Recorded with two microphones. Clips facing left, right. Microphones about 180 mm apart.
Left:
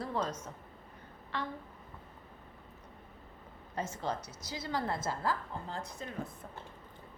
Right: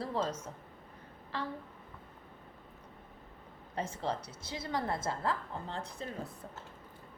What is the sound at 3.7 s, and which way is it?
A woman's voice, 30° right (ahead or behind).